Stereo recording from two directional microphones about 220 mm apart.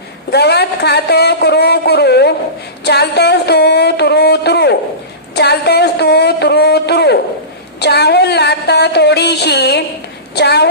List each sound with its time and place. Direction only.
0.3 s speech: 50° left (ahead or behind)